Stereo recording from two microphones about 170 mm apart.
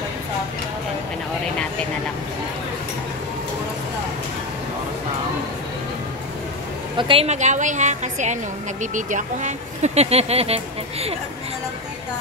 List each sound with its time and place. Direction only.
7.0 s a woman's voice: 30° right (ahead or behind)